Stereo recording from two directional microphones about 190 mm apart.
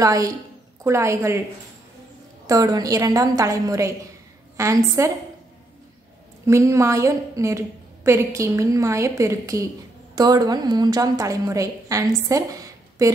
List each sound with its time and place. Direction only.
0.0 s a woman's voice: 20° right (ahead or behind)
2.4 s a woman's voice: 15° right (ahead or behind)
6.4 s a woman's voice: 15° right (ahead or behind)